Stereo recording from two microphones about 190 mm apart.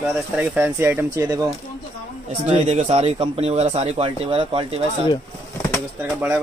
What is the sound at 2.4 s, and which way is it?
Speech, 35° right (ahead or behind).